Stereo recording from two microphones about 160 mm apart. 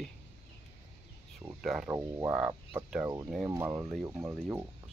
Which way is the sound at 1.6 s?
Centre (ahead or behind).